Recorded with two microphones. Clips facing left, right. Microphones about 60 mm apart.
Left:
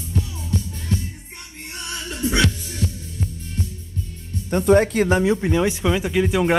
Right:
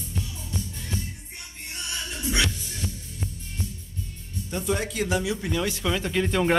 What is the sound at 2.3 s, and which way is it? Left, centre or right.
Music, left.